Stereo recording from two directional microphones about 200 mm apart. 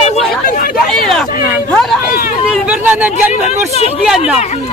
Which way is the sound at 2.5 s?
5° right (ahead or behind).